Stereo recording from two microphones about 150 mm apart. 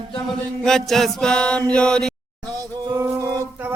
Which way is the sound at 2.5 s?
25° right (ahead or behind).